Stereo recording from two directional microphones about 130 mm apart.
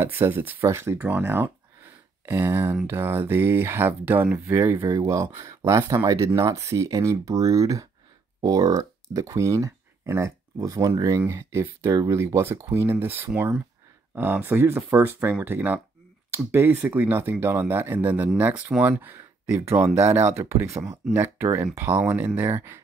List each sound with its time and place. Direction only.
0.0 s speech: 15° right (ahead or behind)